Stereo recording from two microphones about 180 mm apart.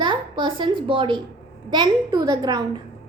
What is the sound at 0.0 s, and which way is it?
A woman's voice, 25° right (ahead or behind).